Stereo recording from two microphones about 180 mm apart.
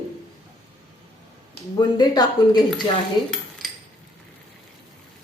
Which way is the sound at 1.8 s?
25° left (ahead or behind).